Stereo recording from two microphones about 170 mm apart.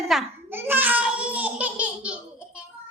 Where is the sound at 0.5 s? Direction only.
10° right (ahead or behind).